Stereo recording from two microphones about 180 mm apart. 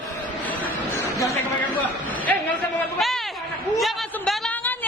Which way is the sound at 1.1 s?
20° left (ahead or behind).